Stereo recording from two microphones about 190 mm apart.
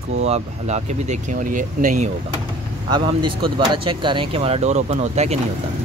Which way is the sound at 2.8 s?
25° right (ahead or behind).